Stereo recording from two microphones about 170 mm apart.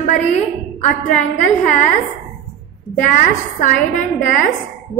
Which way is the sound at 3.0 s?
50° left (ahead or behind).